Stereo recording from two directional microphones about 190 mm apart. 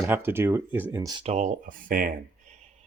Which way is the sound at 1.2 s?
40° right (ahead or behind).